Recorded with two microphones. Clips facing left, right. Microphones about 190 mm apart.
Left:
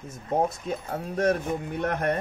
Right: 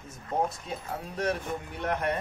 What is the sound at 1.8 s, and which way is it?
Speech, 45° left (ahead or behind).